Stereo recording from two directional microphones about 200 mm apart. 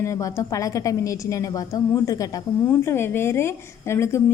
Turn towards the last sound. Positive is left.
turn(degrees=15)  # may be behind; listen again after turning